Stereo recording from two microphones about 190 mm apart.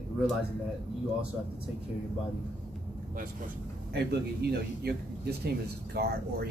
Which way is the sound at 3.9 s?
55° right (ahead or behind).